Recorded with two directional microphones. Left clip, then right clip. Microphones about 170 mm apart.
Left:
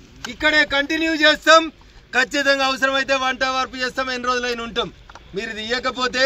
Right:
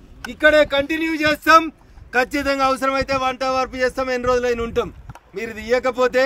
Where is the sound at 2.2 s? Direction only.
30° right (ahead or behind).